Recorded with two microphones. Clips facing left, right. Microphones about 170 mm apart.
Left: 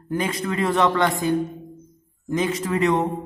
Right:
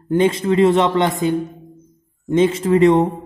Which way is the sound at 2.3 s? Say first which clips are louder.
Right 8 dB; 25° right (ahead or behind).